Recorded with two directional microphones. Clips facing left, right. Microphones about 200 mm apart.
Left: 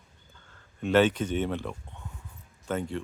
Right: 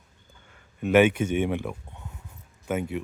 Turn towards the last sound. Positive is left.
turn(degrees=-10)  # may be behind; listen again after turning